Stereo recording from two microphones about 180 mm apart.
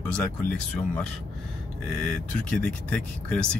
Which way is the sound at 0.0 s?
5° left (ahead or behind).